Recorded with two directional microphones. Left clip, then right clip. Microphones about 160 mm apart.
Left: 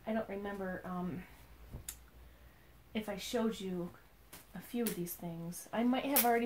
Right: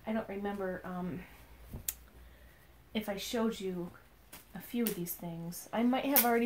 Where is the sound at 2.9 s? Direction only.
30° right (ahead or behind).